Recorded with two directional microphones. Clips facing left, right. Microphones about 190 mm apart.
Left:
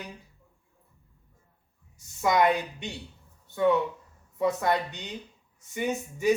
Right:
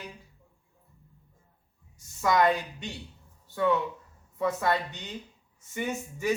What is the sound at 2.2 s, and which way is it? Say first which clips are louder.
Speech: left 1 dB; 20° left (ahead or behind).